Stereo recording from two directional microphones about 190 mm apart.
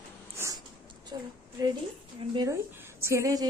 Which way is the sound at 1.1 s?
20° right (ahead or behind).